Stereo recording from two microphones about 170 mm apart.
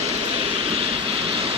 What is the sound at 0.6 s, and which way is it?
Vehicle, 35° right (ahead or behind).